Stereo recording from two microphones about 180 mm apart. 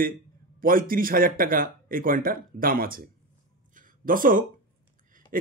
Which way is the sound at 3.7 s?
50° right (ahead or behind).